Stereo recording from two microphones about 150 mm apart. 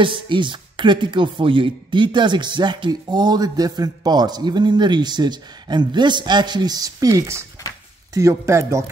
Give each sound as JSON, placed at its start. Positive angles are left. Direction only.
{"t": 0.0, "sound": "speech", "side_deg": -35}